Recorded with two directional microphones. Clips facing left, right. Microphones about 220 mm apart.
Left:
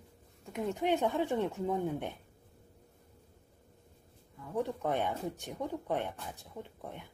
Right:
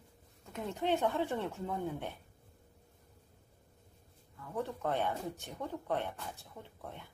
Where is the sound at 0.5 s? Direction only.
15° left (ahead or behind).